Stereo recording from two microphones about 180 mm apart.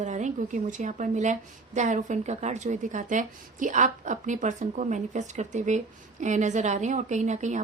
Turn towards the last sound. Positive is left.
turn(degrees=-40)  # may be behind; listen again after turning